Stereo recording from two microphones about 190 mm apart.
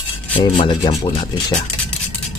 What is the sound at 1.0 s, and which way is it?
Speech, 30° left (ahead or behind).